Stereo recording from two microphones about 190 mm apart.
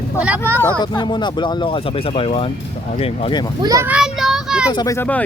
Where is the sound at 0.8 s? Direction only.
25° left (ahead or behind).